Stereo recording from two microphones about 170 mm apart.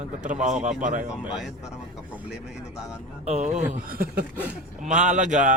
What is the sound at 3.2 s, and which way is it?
Speech, 40° right (ahead or behind).